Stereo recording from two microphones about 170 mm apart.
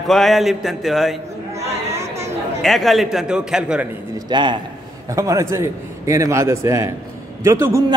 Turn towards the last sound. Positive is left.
turn(degrees=-15)  # may be behind; listen again after turning